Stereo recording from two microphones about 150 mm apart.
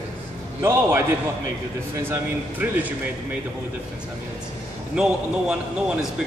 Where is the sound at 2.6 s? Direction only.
15° right (ahead or behind).